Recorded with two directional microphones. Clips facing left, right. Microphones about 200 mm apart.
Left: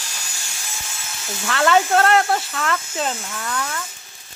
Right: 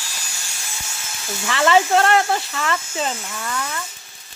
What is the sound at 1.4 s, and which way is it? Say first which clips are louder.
Speech: right 1 dB; centre (ahead or behind).